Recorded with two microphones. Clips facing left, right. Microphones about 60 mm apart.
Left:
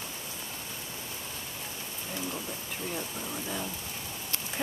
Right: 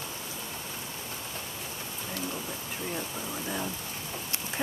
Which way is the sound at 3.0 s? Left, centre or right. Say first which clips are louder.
Right 1 dB; centre.